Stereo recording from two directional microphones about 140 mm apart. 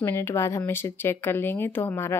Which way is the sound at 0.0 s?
15° left (ahead or behind).